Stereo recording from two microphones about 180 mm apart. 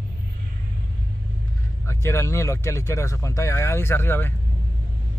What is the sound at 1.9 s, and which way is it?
Speech, 15° left (ahead or behind).